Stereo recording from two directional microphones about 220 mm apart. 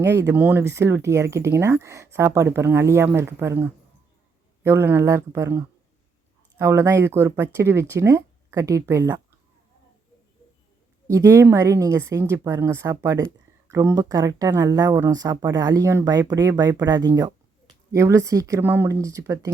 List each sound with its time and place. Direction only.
0.0 s speech: 10° right (ahead or behind)
11.1 s speech: 15° right (ahead or behind)